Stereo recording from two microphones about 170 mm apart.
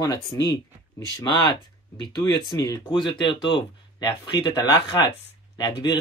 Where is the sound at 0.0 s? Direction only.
20° left (ahead or behind).